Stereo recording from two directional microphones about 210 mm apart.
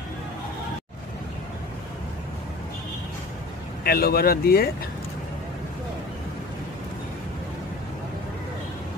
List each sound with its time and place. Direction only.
3.8 s speech: 45° left (ahead or behind)